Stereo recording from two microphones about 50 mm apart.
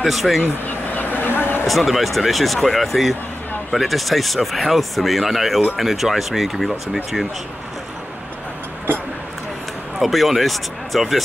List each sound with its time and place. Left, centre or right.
0.0 s speech: centre
0.7 s vehicle: left
1.7 s speech: centre
9.9 s speech: centre